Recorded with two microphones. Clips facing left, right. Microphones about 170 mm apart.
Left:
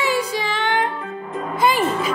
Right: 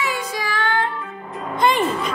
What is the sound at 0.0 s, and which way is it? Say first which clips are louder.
Music: left 4 dB; 30° left (ahead or behind).